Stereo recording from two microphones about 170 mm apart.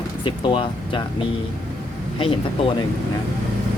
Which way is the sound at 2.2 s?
30° left (ahead or behind).